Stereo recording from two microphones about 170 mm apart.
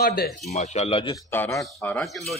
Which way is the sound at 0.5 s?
40° left (ahead or behind).